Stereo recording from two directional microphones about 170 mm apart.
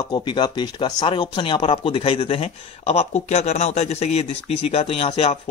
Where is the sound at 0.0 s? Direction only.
25° left (ahead or behind).